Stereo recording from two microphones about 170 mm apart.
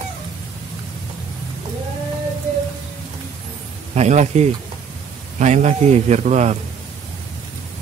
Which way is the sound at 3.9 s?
40° right (ahead or behind).